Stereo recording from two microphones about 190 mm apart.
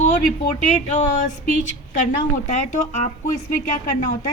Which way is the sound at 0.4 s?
40° left (ahead or behind).